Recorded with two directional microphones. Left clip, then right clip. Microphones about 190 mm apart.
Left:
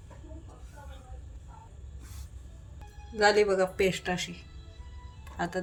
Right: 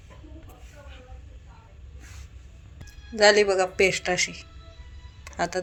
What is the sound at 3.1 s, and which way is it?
Speech, 30° right (ahead or behind).